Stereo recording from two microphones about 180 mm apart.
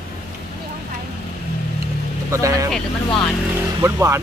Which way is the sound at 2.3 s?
15° right (ahead or behind).